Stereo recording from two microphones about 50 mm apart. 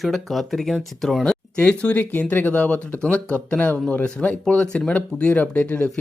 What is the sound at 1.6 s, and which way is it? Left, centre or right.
Speech, left.